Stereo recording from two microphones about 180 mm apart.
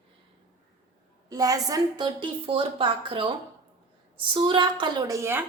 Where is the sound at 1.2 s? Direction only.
20° right (ahead or behind).